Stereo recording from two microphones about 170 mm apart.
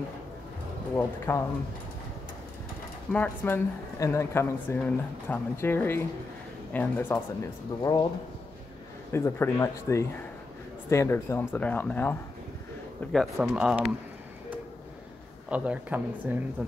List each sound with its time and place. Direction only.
0.9 s a woman's voice: 15° left (ahead or behind)
3.1 s a woman's voice: 10° left (ahead or behind)
7.8 s speech: 25° left (ahead or behind)
9.1 s a woman's voice: 15° left (ahead or behind)
13.1 s speech: centre (ahead or behind)
15.5 s speech: 10° right (ahead or behind)